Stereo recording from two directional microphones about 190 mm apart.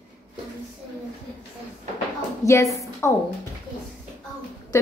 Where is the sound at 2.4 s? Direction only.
15° left (ahead or behind).